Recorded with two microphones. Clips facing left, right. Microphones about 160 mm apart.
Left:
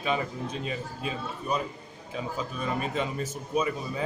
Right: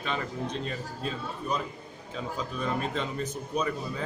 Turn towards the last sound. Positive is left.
turn(degrees=5)  # may be behind; listen again after turning